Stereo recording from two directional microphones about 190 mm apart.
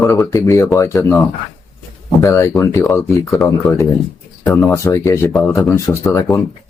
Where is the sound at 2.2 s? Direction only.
15° left (ahead or behind).